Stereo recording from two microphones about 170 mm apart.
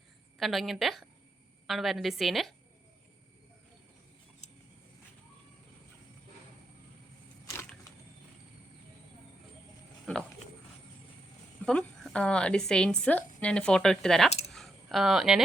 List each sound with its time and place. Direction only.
0.3 s a woman's voice: centre (ahead or behind)
4.4 s vehicle: 40° left (ahead or behind)
11.6 s a woman's voice: 5° left (ahead or behind)
14.5 s a sound: centre (ahead or behind)